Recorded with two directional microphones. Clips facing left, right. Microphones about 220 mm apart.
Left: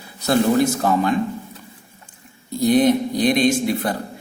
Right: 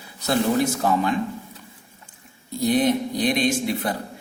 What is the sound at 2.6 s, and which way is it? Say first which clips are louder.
Speech: left 4 dB; 40° left (ahead or behind).